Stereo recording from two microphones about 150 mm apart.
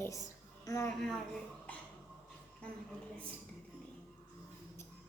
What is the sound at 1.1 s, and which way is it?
Speech, 5° left (ahead or behind).